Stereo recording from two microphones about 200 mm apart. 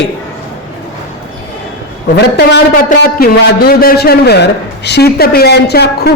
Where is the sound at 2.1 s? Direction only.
55° left (ahead or behind).